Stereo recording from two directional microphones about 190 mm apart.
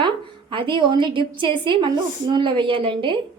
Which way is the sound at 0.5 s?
25° right (ahead or behind).